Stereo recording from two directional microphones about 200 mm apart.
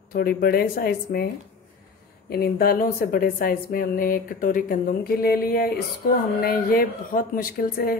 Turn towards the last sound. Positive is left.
turn(degrees=45)  # may be behind; listen again after turning